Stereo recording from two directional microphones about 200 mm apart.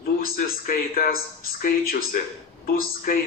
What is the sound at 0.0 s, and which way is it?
Speech, 45° left (ahead or behind).